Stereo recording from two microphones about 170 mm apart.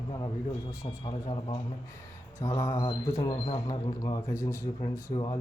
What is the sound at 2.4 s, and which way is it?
Speech, 15° left (ahead or behind).